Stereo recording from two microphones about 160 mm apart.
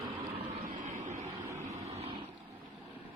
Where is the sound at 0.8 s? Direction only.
50° right (ahead or behind).